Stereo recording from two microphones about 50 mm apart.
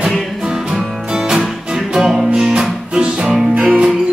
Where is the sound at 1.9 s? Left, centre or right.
Centre.